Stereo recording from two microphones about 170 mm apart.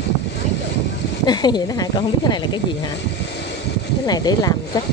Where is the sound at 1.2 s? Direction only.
25° left (ahead or behind).